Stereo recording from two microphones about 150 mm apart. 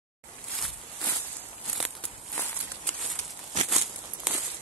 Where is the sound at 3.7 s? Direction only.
Centre (ahead or behind).